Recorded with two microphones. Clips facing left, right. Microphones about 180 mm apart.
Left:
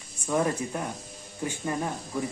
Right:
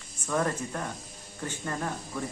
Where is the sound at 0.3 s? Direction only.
15° left (ahead or behind).